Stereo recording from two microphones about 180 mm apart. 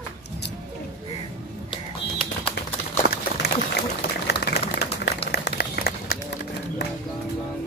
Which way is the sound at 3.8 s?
65° left (ahead or behind).